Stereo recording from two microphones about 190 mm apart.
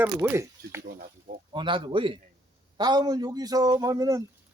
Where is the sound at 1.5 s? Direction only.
25° right (ahead or behind).